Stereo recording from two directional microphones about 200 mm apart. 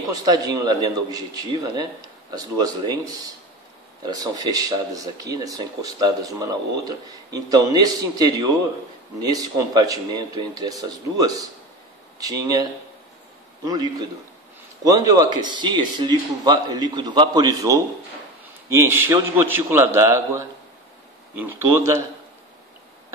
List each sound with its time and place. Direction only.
0.1 s a man's voice: 20° right (ahead or behind)
13.7 s a man's voice: 20° right (ahead or behind)